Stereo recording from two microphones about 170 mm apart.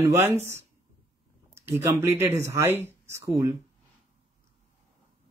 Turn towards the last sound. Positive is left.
turn(degrees=-15)  # may be behind; listen again after turning